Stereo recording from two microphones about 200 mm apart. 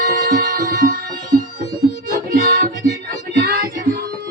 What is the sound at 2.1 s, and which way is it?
Music, 50° right (ahead or behind).